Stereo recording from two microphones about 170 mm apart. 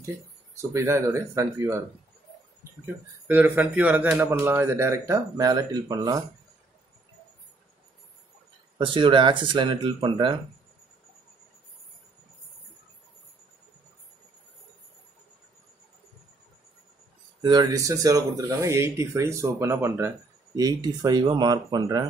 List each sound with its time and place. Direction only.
0.6 s a man's voice: 15° right (ahead or behind)
3.3 s a man's voice: 10° right (ahead or behind)
8.7 s speech: 30° right (ahead or behind)
17.4 s a man's voice: 25° right (ahead or behind)